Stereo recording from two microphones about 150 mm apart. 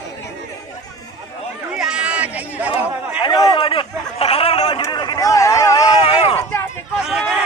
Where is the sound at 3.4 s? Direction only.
30° left (ahead or behind).